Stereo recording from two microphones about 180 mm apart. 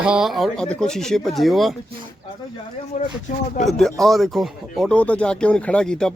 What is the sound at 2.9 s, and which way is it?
Speech, 40° left (ahead or behind).